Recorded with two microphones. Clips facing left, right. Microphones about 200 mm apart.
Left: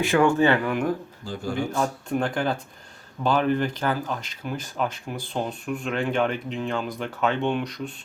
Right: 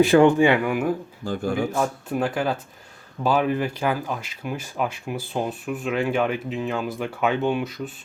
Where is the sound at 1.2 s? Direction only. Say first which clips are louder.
Right 4 dB; 55° right (ahead or behind).